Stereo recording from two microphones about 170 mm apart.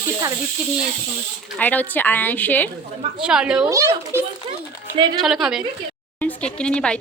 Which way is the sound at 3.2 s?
5° right (ahead or behind).